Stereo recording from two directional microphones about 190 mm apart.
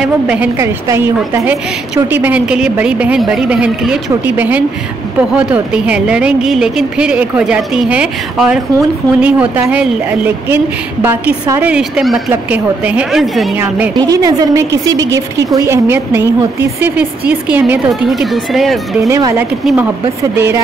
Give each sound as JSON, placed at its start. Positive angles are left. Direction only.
{"t": 0.0, "sound": "a woman's voice", "side_deg": -5}
{"t": 13.9, "sound": "a woman's voice", "side_deg": -20}
{"t": 17.3, "sound": "speech", "side_deg": -10}
{"t": 18.9, "sound": "a woman's voice", "side_deg": -15}